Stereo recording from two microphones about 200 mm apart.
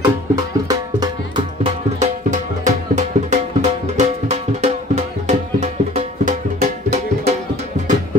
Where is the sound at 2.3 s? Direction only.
40° right (ahead or behind).